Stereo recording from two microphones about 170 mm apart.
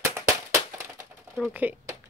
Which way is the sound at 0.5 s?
15° right (ahead or behind).